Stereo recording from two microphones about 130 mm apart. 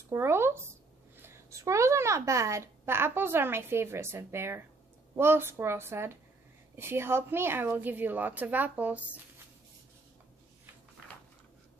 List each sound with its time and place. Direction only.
0.1 s a woman's voice: 20° right (ahead or behind)